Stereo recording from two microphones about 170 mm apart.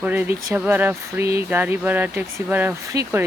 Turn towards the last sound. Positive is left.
turn(degrees=-15)  # may be behind; listen again after turning